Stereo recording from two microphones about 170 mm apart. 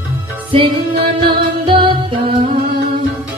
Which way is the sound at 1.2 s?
30° right (ahead or behind).